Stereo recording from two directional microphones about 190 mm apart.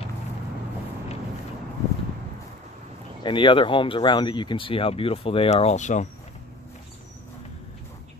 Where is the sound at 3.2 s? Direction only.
25° left (ahead or behind).